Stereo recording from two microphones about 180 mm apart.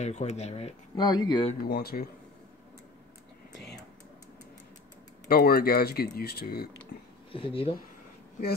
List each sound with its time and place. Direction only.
0.0 s speech: 40° left (ahead or behind)
0.9 s speech: 25° left (ahead or behind)
1.7 s speech: 60° left (ahead or behind)
5.3 s speech: 55° left (ahead or behind)
6.9 s a sound: 50° left (ahead or behind)
7.3 s speech: 30° left (ahead or behind)